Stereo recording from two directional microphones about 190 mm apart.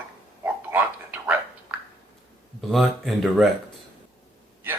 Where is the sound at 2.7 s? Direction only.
Centre (ahead or behind).